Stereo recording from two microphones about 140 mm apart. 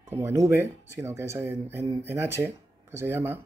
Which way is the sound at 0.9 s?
20° right (ahead or behind).